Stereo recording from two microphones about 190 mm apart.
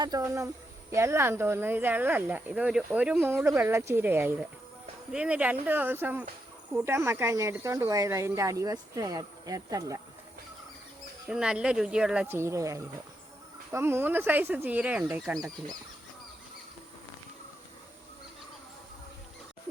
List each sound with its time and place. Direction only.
0.0 s speech: 20° right (ahead or behind)
11.3 s speech: 5° right (ahead or behind)